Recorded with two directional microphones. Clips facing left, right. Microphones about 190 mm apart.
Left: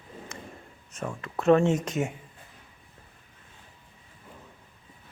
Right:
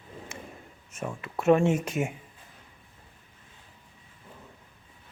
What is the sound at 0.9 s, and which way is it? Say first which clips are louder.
Speech: even; 10° right (ahead or behind).